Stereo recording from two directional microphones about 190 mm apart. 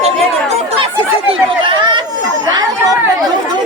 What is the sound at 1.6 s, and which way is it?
Speech, 25° right (ahead or behind).